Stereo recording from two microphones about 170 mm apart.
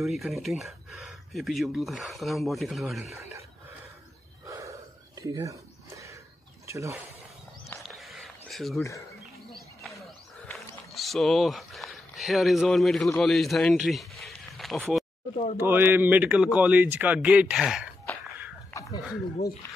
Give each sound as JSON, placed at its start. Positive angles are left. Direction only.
{"t": 0.0, "sound": "speech", "side_deg": 0}
{"t": 4.5, "sound": "a sound", "side_deg": -20}
{"t": 6.7, "sound": "speech", "side_deg": -15}
{"t": 7.9, "sound": "a sound", "side_deg": 0}
{"t": 10.9, "sound": "speech", "side_deg": 0}
{"t": 15.5, "sound": "a man's voice", "side_deg": -10}